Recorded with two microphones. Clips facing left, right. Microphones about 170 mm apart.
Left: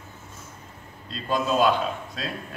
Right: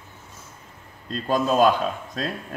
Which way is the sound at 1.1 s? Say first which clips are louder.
Right 3 dB; 45° right (ahead or behind).